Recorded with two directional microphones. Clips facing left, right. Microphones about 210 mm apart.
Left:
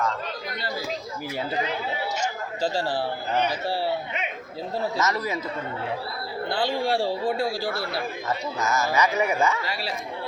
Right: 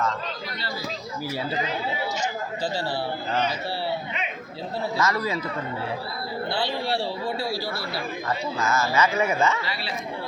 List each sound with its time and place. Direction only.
4.9 s a man's voice: 20° left (ahead or behind)
6.5 s speech: 45° left (ahead or behind)
8.5 s speech: 15° left (ahead or behind)
9.6 s speech: 45° left (ahead or behind)